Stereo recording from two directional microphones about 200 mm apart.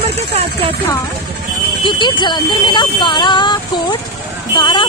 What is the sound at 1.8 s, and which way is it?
Speech, 25° left (ahead or behind).